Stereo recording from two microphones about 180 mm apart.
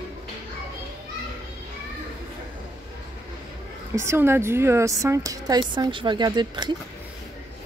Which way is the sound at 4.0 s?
15° right (ahead or behind).